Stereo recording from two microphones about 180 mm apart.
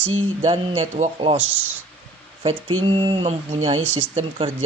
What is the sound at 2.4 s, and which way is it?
Speech, 30° right (ahead or behind).